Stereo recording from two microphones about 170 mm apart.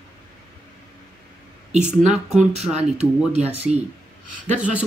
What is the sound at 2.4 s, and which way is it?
Speech, 40° right (ahead or behind).